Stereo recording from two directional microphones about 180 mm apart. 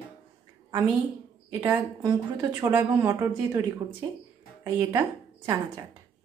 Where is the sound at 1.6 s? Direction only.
20° right (ahead or behind).